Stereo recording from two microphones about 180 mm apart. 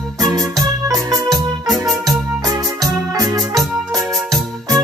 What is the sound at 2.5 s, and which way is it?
Music, 20° right (ahead or behind).